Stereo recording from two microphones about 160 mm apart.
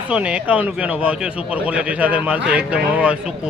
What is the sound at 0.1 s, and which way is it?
Speech, 5° right (ahead or behind).